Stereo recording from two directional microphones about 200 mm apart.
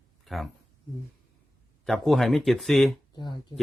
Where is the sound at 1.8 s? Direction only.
Centre (ahead or behind).